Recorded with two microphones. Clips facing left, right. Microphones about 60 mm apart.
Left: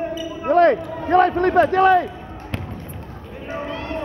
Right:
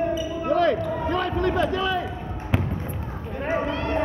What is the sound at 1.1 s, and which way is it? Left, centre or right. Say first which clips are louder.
Speech: left 11 dB; left.